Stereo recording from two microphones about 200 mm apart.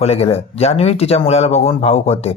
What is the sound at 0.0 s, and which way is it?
Speech, 30° left (ahead or behind).